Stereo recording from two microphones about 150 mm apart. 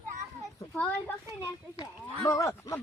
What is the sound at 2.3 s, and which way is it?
Speech, 20° left (ahead or behind).